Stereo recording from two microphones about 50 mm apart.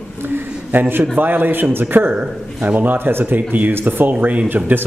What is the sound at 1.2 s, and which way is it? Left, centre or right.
A man's voice, right.